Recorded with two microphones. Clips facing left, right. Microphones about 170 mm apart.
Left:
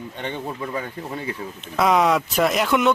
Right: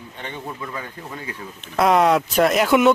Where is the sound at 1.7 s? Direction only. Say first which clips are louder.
Right 2 dB; centre (ahead or behind).